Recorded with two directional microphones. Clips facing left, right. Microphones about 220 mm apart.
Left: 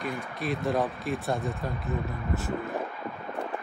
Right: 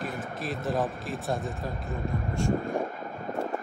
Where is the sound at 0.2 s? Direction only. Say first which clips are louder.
Left 2 dB; centre (ahead or behind).